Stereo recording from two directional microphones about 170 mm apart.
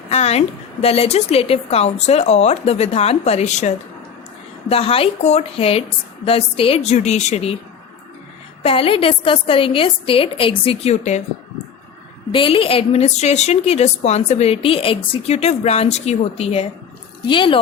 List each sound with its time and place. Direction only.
0.1 s a woman's voice: 40° left (ahead or behind)
8.6 s a woman's voice: 35° left (ahead or behind)
12.3 s a woman's voice: 30° left (ahead or behind)